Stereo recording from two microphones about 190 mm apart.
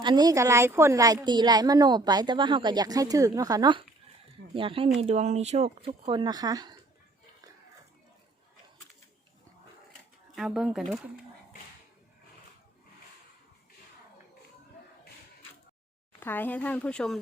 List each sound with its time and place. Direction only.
0.0 s a woman's voice: 20° right (ahead or behind)
10.3 s speech: centre (ahead or behind)
16.2 s speech: 10° left (ahead or behind)